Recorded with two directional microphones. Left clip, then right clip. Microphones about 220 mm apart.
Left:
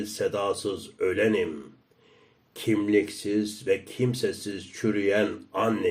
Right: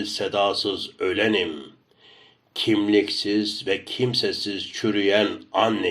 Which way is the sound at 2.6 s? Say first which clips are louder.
Right 4 dB; 15° left (ahead or behind).